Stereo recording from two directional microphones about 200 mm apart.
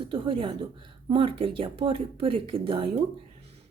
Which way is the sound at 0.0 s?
25° right (ahead or behind).